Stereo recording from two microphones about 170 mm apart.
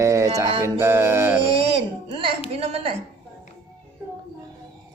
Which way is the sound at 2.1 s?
30° right (ahead or behind).